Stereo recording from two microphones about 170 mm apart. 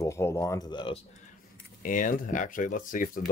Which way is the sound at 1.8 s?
50° left (ahead or behind).